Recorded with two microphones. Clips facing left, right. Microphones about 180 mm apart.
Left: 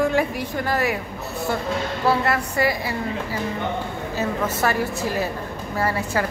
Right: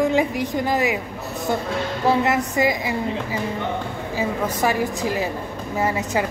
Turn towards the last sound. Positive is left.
turn(degrees=-20)  # may be behind; listen again after turning